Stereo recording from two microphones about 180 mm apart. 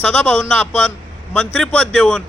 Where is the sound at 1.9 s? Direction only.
Centre (ahead or behind).